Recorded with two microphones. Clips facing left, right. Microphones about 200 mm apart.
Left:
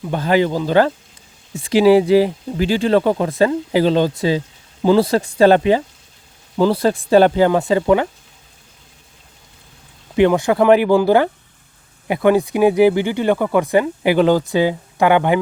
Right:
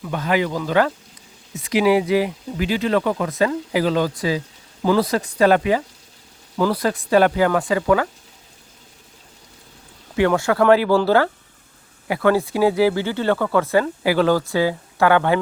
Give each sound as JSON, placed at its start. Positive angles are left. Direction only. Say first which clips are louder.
{"t": 0.0, "sound": "speech", "louder": "left 5 dB", "side_deg": 30}
{"t": 10.2, "sound": "speech", "louder": "left 4 dB", "side_deg": 20}